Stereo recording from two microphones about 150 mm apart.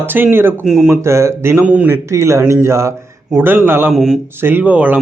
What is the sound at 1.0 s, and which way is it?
Speech, 20° right (ahead or behind).